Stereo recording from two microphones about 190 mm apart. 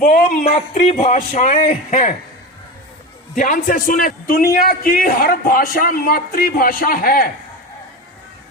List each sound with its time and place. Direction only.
0.0 s speech: 45° left (ahead or behind)
3.3 s speech: 45° left (ahead or behind)